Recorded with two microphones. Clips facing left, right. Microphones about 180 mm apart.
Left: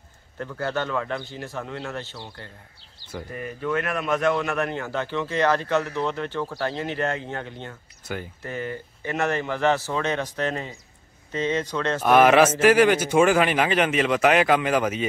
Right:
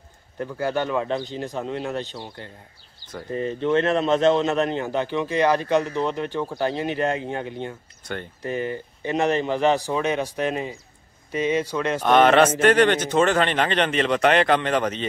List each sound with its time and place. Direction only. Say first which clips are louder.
0.4 s speech: right 3 dB; 15° right (ahead or behind)
12.0 s speech: even; 5° left (ahead or behind)